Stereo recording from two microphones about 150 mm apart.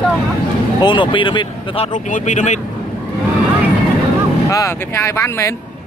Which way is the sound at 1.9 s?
55° left (ahead or behind).